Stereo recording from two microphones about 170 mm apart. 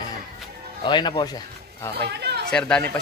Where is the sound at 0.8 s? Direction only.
25° left (ahead or behind).